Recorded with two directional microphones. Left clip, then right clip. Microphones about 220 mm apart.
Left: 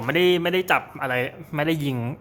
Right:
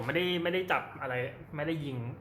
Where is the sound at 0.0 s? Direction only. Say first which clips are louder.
Left 10 dB; 40° left (ahead or behind).